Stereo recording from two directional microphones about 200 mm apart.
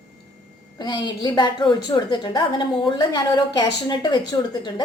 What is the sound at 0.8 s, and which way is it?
A woman's voice, 20° left (ahead or behind).